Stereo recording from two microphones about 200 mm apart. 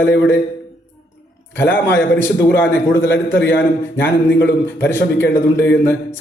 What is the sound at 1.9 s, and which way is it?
A man's voice, 60° left (ahead or behind).